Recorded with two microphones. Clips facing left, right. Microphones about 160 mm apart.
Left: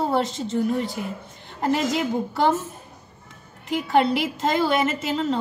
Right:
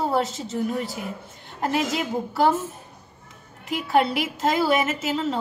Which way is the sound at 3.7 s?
Centre (ahead or behind).